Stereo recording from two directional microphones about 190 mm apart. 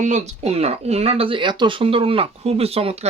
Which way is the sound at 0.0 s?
40° right (ahead or behind).